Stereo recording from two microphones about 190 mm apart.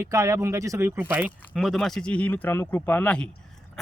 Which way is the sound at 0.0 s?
15° right (ahead or behind).